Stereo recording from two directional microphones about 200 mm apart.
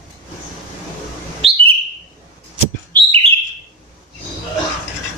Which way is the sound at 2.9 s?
25° right (ahead or behind).